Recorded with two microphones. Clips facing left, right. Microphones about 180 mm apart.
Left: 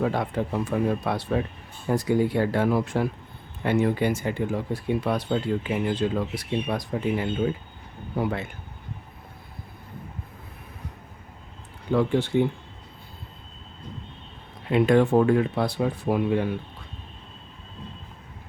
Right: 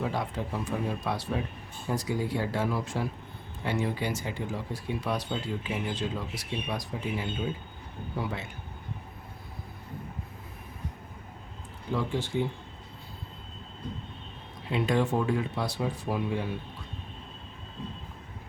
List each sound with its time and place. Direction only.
0.0 s speech: 60° left (ahead or behind)
11.9 s speech: 65° left (ahead or behind)
14.7 s speech: 55° left (ahead or behind)